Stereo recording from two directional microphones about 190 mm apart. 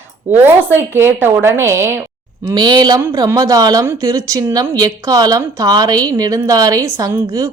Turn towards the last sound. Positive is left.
turn(degrees=-20)  # may be behind; listen again after turning